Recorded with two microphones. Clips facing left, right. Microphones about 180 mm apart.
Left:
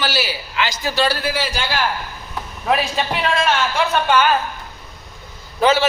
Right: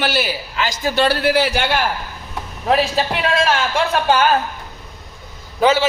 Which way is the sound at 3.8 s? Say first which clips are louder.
Right 1 dB; 35° right (ahead or behind).